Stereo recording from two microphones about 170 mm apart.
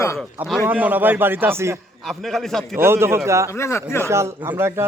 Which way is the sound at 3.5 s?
15° left (ahead or behind).